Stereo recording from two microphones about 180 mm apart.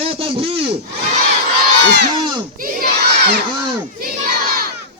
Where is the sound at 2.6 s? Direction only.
50° right (ahead or behind).